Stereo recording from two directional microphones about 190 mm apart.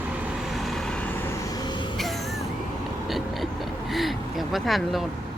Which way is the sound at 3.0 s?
Centre (ahead or behind).